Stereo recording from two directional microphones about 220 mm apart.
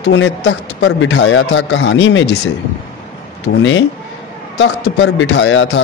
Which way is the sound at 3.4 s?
55° left (ahead or behind).